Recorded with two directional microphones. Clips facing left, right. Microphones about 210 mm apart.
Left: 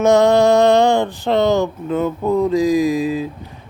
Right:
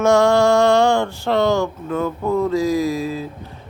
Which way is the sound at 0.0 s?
20° left (ahead or behind).